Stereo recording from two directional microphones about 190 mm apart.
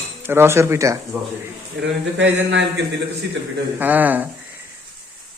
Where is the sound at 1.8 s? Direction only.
70° right (ahead or behind).